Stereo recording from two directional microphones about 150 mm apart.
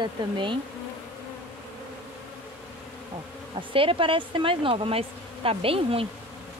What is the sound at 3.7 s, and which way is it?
Speech, 35° right (ahead or behind).